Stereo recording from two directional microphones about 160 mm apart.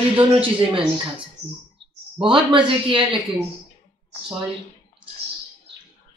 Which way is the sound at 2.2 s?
30° right (ahead or behind).